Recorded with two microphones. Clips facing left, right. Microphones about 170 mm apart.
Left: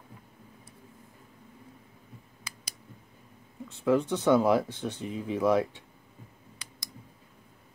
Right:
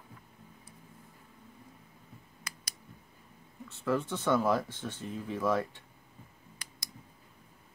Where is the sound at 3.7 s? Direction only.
15° left (ahead or behind).